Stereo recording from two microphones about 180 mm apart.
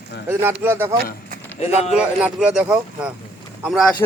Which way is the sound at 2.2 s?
5° right (ahead or behind).